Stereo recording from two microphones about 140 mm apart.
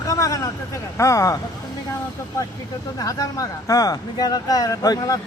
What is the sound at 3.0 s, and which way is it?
Speech, 25° left (ahead or behind).